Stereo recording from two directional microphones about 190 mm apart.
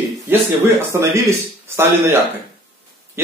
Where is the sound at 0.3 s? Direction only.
15° right (ahead or behind).